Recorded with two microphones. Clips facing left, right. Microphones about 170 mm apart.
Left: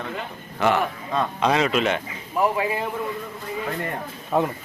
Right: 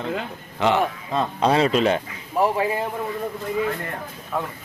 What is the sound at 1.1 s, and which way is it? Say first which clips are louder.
Speech: right 1 dB; 30° right (ahead or behind).